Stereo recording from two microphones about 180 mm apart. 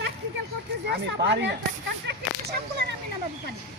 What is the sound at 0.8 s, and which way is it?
Speech, 70° right (ahead or behind).